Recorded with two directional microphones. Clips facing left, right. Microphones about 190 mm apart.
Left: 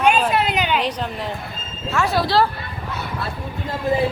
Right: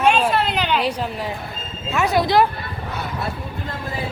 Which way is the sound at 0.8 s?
10° right (ahead or behind).